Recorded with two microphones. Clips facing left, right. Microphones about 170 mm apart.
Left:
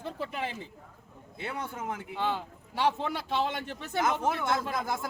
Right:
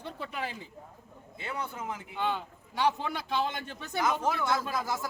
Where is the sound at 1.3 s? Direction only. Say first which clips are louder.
Left 1 dB; 55° left (ahead or behind).